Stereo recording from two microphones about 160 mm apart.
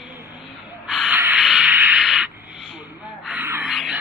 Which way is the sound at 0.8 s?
5° right (ahead or behind).